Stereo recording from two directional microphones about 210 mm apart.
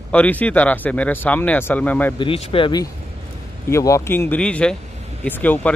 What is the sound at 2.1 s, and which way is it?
Speech, 25° left (ahead or behind).